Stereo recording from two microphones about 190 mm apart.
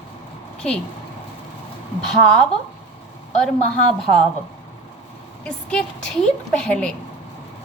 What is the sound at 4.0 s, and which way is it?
Speech, centre (ahead or behind).